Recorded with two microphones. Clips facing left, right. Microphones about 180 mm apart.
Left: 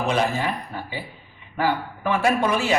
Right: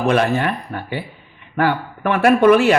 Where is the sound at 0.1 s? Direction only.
60° right (ahead or behind).